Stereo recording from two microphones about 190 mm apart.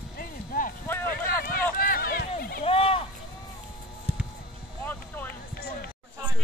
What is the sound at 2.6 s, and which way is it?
Run, 30° left (ahead or behind).